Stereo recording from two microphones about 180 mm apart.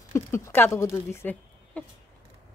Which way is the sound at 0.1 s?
15° left (ahead or behind).